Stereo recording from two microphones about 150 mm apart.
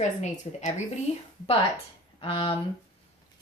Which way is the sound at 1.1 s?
45° left (ahead or behind).